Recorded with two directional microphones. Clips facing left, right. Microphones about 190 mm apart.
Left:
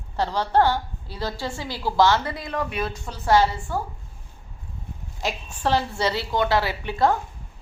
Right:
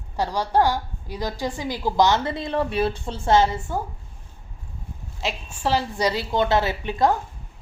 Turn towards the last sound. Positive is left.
turn(degrees=-20)  # may be behind; listen again after turning